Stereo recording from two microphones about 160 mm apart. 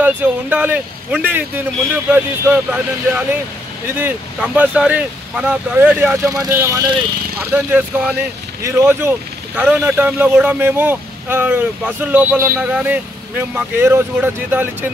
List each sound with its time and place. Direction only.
0.0 s speech: 10° right (ahead or behind)
7.5 s speech: 10° right (ahead or behind)